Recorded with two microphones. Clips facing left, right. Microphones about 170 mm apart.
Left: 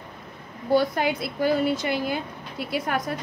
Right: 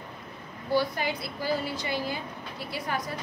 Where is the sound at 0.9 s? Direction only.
60° left (ahead or behind).